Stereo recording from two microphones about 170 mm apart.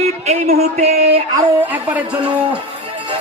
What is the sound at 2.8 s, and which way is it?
Music, 30° right (ahead or behind).